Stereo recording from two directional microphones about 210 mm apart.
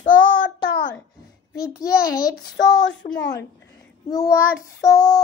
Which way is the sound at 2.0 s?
45° left (ahead or behind).